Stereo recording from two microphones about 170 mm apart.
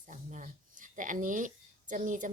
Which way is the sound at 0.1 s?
45° right (ahead or behind).